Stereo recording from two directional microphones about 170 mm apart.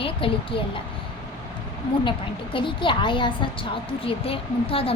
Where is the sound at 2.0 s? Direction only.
30° left (ahead or behind).